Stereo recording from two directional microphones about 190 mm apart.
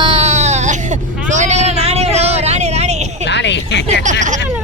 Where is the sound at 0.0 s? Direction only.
30° right (ahead or behind).